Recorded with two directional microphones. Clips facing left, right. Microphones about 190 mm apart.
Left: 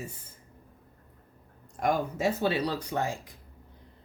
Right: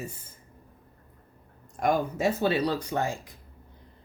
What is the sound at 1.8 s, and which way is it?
Speech, 55° right (ahead or behind).